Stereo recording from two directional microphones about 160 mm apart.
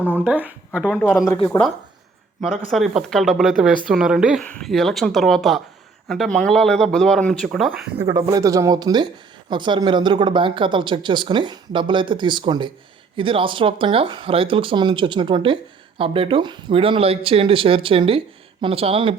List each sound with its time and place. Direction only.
0.1 s speech: 10° right (ahead or behind); by 1.7 s 10° left (ahead or behind)
2.7 s speech: centre (ahead or behind)
8.0 s speech: 20° right (ahead or behind)